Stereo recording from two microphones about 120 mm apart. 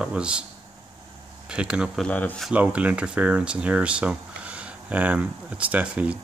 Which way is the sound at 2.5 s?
10° right (ahead or behind).